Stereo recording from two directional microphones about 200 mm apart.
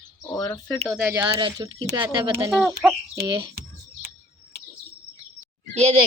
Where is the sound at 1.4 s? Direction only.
20° right (ahead or behind).